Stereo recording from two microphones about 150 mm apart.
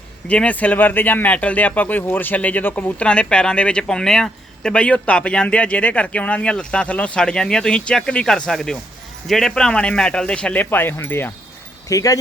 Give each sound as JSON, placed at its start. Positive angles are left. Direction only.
{"t": 0.3, "sound": "speech", "side_deg": 10}